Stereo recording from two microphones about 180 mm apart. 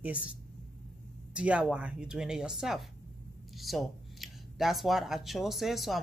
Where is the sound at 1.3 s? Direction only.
5° right (ahead or behind).